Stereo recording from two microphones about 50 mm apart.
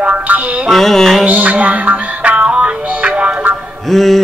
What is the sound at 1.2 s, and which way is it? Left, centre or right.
Music, right.